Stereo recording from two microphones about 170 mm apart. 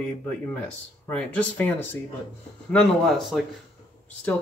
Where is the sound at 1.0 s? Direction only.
10° left (ahead or behind).